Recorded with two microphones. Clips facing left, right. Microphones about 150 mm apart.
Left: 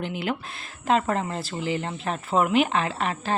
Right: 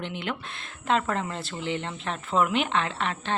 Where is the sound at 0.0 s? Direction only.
5° left (ahead or behind).